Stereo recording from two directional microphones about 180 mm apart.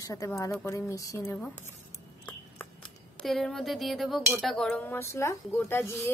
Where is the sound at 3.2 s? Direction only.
Centre (ahead or behind).